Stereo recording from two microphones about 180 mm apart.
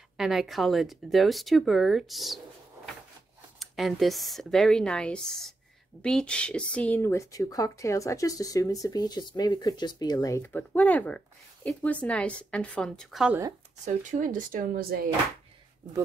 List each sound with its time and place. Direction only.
0.2 s speech: centre (ahead or behind)
3.5 s speech: centre (ahead or behind)
13.8 s speech: 50° right (ahead or behind)